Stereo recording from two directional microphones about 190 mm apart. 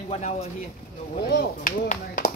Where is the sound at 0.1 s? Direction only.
35° left (ahead or behind).